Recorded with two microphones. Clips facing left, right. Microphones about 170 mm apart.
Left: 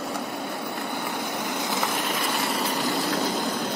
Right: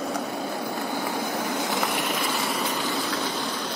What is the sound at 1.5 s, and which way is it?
Vehicle, 20° right (ahead or behind).